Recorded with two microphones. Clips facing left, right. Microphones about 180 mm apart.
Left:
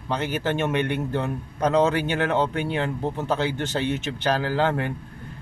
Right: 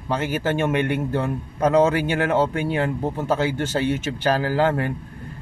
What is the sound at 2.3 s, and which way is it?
Speech, 40° right (ahead or behind).